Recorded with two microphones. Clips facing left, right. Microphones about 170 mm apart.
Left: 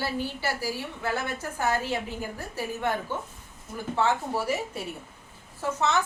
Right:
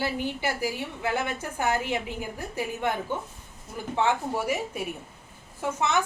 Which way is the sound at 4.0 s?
15° right (ahead or behind).